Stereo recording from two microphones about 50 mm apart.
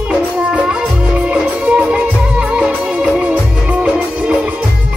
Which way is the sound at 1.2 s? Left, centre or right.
Right.